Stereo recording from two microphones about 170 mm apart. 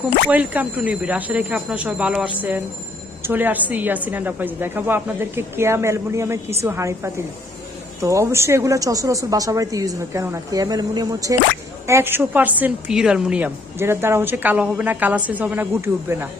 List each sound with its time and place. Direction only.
0.0 s a woman's voice: 10° right (ahead or behind)